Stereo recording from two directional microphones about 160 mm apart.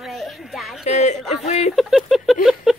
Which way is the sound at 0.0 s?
Centre (ahead or behind).